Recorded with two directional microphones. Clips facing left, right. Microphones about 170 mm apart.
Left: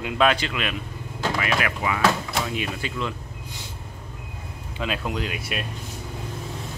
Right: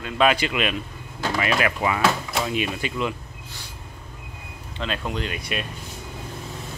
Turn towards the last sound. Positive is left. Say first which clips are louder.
# even
turn(degrees=5)  # may be behind; listen again after turning